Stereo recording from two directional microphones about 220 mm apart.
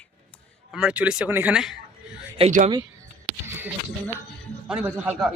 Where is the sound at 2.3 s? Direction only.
30° right (ahead or behind).